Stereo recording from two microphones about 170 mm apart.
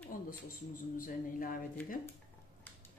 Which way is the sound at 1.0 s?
50° left (ahead or behind).